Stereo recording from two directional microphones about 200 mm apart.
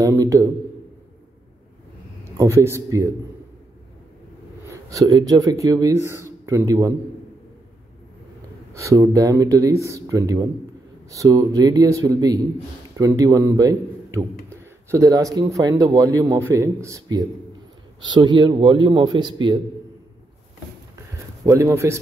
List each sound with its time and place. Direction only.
0.0 s a man's voice: 15° right (ahead or behind)
2.3 s a man's voice: 15° right (ahead or behind)
4.6 s speech: 15° right (ahead or behind)
8.7 s a man's voice: 15° right (ahead or behind)
21.5 s a man's voice: 15° right (ahead or behind)